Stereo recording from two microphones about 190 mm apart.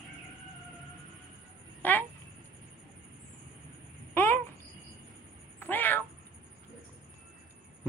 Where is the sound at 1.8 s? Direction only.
10° left (ahead or behind).